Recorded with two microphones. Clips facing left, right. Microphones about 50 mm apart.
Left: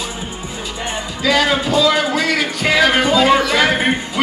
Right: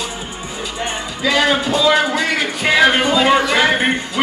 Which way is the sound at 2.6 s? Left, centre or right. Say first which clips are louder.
Right 2 dB; centre.